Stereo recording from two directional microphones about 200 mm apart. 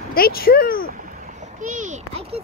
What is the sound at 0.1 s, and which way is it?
Speech, 50° left (ahead or behind).